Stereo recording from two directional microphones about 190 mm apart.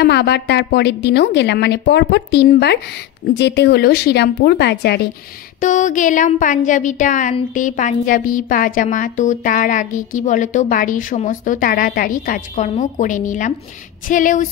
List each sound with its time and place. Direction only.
0.0 s a woman's voice: 60° left (ahead or behind)
5.6 s a woman's voice: 40° left (ahead or behind)